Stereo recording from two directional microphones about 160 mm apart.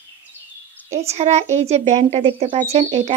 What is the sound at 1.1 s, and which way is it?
A woman's voice, 45° right (ahead or behind).